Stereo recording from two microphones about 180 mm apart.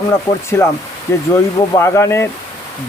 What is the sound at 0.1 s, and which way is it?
Speech, 15° left (ahead or behind).